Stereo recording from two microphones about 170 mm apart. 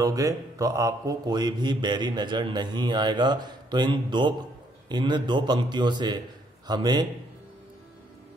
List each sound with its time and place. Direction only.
0.0 s a man's voice: 20° right (ahead or behind)